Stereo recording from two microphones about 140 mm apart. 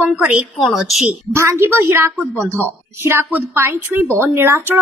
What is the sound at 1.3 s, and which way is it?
A woman's voice, 20° right (ahead or behind).